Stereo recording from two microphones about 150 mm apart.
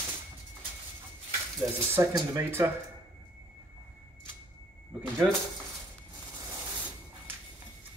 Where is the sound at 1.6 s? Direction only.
20° right (ahead or behind).